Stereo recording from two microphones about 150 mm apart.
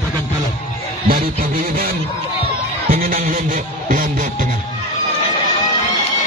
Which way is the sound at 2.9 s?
70° right (ahead or behind).